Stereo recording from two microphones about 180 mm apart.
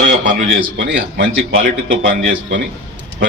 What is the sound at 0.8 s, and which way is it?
A man's voice, 75° right (ahead or behind).